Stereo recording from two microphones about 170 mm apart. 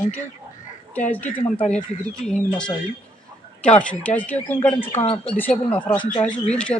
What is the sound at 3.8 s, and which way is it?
Speech, 10° left (ahead or behind).